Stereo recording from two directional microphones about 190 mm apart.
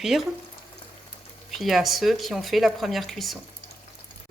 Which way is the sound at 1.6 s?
Centre (ahead or behind).